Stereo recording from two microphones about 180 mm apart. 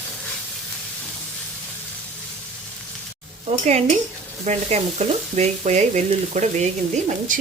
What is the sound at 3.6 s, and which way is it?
Frying, 40° right (ahead or behind).